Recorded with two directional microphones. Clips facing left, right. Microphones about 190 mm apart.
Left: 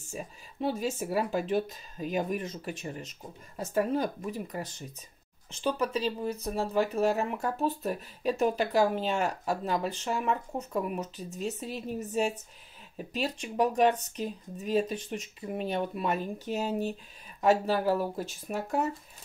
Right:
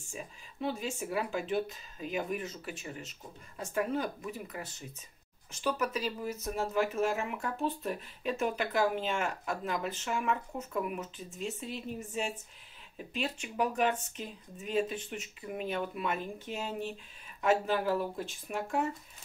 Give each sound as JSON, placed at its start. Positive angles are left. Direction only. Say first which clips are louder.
{"t": 0.0, "sound": "speech", "louder": "left 4 dB", "side_deg": 40}